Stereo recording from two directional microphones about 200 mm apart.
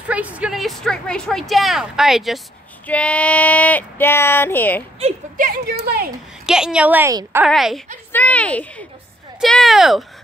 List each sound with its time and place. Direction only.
0.1 s a woman's voice: 5° right (ahead or behind); by 4.8 s 10° left (ahead or behind)
5.0 s speech: 45° right (ahead or behind)
6.4 s a woman's voice: 5° right (ahead or behind)
7.4 s a woman's voice: centre (ahead or behind)